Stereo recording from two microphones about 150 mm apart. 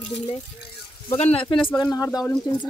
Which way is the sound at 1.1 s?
40° left (ahead or behind).